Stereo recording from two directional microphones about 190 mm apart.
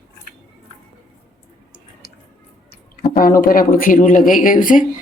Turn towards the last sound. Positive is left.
turn(degrees=45)  # may be behind; listen again after turning